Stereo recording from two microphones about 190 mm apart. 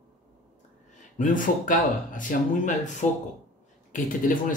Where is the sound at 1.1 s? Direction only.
45° left (ahead or behind).